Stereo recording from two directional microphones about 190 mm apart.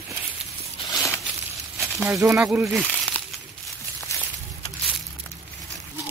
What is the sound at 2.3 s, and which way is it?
Speech, 5° right (ahead or behind).